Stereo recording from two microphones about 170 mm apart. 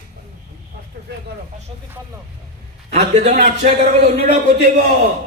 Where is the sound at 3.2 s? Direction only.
45° right (ahead or behind).